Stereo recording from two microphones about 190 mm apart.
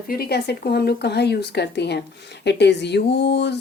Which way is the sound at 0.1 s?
55° left (ahead or behind).